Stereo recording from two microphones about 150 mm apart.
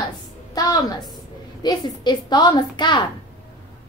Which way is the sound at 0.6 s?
25° left (ahead or behind).